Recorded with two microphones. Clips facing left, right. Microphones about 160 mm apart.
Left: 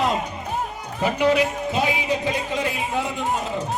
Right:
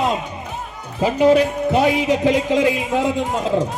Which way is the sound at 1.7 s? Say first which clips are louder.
Right 6 dB; 70° right (ahead or behind).